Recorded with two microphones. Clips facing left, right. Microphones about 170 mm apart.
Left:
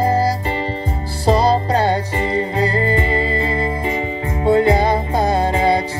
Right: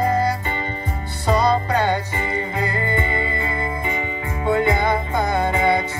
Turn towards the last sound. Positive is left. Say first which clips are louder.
# left 3 dB
turn(degrees=35)  # may be behind; listen again after turning